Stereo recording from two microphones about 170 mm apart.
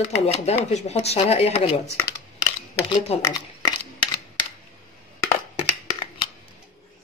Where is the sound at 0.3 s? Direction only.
40° left (ahead or behind).